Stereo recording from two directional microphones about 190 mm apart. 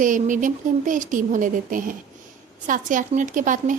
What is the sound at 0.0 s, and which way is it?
A woman's voice, 40° right (ahead or behind).